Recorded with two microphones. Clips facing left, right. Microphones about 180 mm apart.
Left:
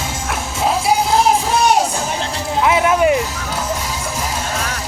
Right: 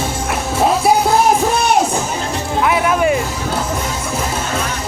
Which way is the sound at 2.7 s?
20° left (ahead or behind).